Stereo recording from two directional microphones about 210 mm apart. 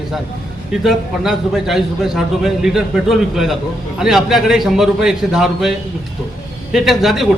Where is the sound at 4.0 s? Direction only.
Centre (ahead or behind).